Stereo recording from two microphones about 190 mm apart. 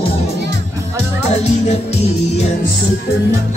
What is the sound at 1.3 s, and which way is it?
Music, 35° left (ahead or behind).